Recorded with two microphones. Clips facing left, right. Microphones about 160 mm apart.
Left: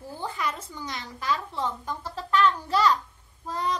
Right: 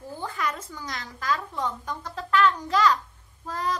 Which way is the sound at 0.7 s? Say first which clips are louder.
Left 1 dB; 10° left (ahead or behind).